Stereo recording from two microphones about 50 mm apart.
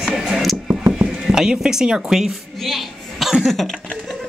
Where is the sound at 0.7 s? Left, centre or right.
Right.